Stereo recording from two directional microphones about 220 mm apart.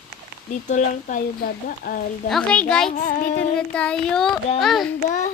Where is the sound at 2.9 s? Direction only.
35° left (ahead or behind).